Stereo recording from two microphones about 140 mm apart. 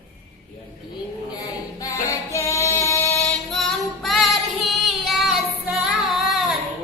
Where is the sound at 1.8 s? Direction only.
25° left (ahead or behind).